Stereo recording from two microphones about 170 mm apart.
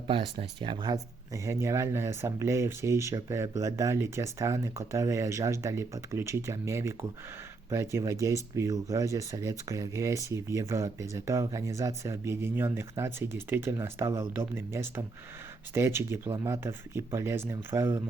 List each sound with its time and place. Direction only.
0.1 s speech: 30° right (ahead or behind); by 18.0 s 15° right (ahead or behind)